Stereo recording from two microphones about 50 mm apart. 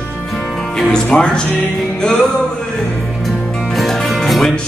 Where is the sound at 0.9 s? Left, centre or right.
Centre.